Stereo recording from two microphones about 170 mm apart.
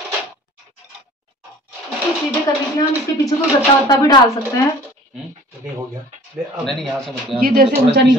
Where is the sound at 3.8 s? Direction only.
20° left (ahead or behind).